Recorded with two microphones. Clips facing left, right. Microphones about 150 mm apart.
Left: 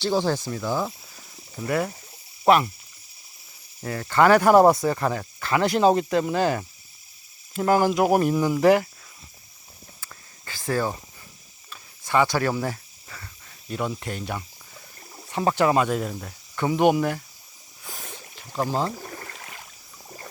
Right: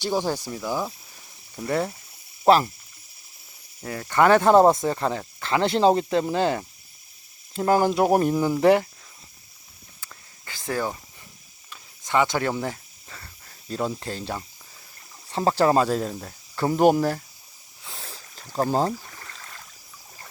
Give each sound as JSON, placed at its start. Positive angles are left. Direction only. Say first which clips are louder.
{"t": 0.0, "sound": "speech", "louder": "left 2 dB", "side_deg": -15}
{"t": 1.6, "sound": "speech", "louder": "even", "side_deg": -30}
{"t": 3.8, "sound": "speech", "louder": "left 1 dB", "side_deg": -20}
{"t": 8.4, "sound": "speech", "louder": "even", "side_deg": -15}
{"t": 8.6, "sound": "speech", "louder": "even", "side_deg": -25}
{"t": 10.4, "sound": "snake", "louder": "left 2 dB", "side_deg": -20}
{"t": 11.7, "sound": "a sound", "louder": "left 1 dB", "side_deg": -20}
{"t": 13.7, "sound": "speech", "louder": "right 1 dB", "side_deg": -30}
{"t": 17.8, "sound": "a sound", "louder": "left 2 dB", "side_deg": -30}
{"t": 18.5, "sound": "speech", "louder": "right 3 dB", "side_deg": -45}
{"t": 18.9, "sound": "rowboat", "louder": "left 5 dB", "side_deg": 45}